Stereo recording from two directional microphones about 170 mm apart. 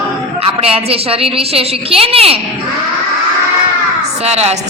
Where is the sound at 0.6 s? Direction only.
35° right (ahead or behind).